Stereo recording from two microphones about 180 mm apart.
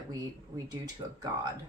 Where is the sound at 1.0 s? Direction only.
20° right (ahead or behind).